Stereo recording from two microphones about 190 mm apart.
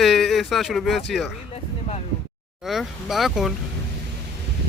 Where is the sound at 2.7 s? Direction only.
Centre (ahead or behind).